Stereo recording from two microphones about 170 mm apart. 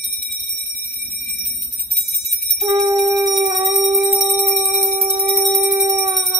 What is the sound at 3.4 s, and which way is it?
Howl, 25° right (ahead or behind).